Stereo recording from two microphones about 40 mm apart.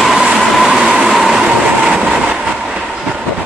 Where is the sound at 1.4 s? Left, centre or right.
Right.